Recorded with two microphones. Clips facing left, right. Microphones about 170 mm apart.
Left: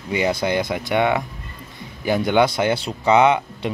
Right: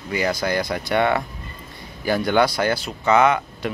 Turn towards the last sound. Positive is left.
turn(degrees=25)  # may be behind; listen again after turning